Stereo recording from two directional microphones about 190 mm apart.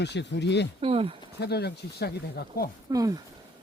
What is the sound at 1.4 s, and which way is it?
Speech, 60° left (ahead or behind).